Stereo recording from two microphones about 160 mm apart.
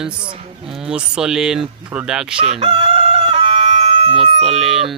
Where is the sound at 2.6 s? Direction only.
35° right (ahead or behind).